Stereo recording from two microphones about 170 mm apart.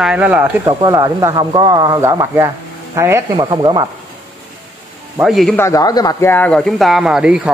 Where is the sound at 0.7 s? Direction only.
25° right (ahead or behind).